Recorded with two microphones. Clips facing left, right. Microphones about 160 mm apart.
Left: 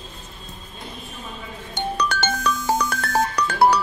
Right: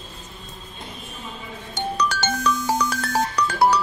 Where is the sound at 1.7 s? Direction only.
60° left (ahead or behind).